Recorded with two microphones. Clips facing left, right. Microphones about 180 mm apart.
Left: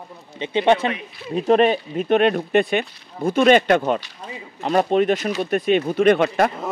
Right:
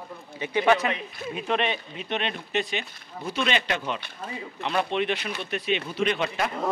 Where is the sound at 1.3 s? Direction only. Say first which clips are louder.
Left 11 dB; 40° left (ahead or behind).